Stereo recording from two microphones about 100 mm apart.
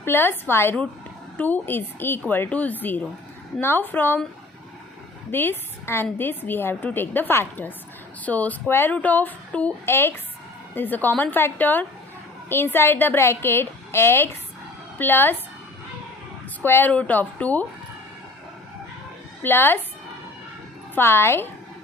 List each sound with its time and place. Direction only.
0.0 s a woman's voice: 20° left (ahead or behind)
5.3 s a woman's voice: 20° left (ahead or behind)
9.8 s a woman's voice: 25° left (ahead or behind)
16.6 s speech: 20° left (ahead or behind)
19.4 s a woman's voice: 20° left (ahead or behind)
20.9 s a woman's voice: 25° left (ahead or behind)